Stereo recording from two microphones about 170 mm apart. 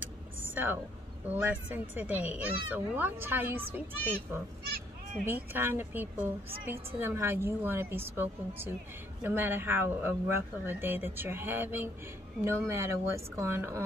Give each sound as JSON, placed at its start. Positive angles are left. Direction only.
{"t": 1.3, "sound": "speech", "side_deg": -10}